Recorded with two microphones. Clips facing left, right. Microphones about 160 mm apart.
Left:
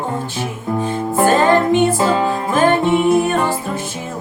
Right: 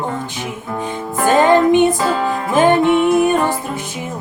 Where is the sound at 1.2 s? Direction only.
20° right (ahead or behind).